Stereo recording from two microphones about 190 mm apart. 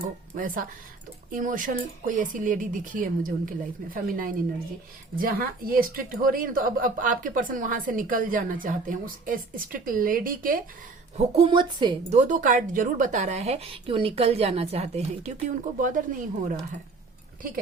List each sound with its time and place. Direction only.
0.3 s a woman's voice: 45° right (ahead or behind)
11.3 s a woman's voice: 25° right (ahead or behind)
12.1 s speech: 40° right (ahead or behind)